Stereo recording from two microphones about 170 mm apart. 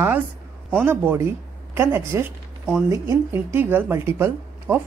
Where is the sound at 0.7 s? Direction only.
10° right (ahead or behind).